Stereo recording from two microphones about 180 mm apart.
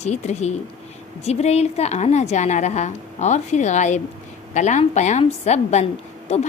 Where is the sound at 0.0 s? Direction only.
40° left (ahead or behind).